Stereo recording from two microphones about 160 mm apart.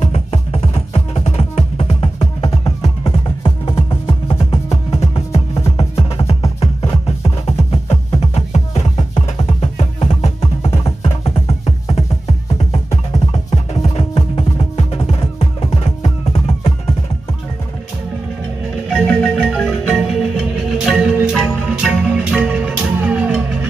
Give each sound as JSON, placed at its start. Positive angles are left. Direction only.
{"t": 0.0, "sound": "music", "side_deg": 40}
{"t": 18.9, "sound": "music", "side_deg": 5}